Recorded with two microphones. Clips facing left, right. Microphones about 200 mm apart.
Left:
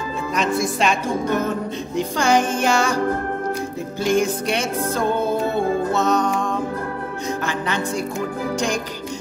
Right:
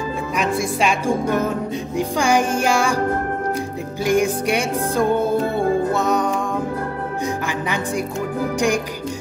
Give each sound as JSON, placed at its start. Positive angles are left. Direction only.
{"t": 0.4, "sound": "music", "side_deg": -10}
{"t": 4.0, "sound": "music", "side_deg": -15}
{"t": 7.4, "sound": "speech", "side_deg": -10}